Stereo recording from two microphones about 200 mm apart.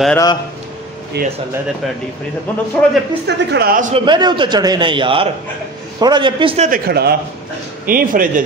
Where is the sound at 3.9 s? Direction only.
25° right (ahead or behind).